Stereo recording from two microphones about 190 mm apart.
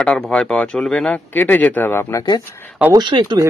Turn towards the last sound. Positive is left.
turn(degrees=-25)  # may be behind; listen again after turning